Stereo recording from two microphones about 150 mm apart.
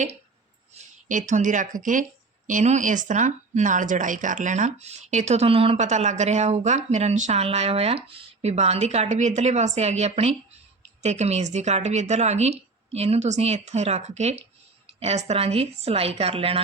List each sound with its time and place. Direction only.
0.8 s speech: 55° right (ahead or behind); by 16.6 s 40° right (ahead or behind)